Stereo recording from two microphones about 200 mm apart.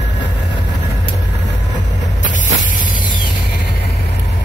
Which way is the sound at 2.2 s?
40° left (ahead or behind).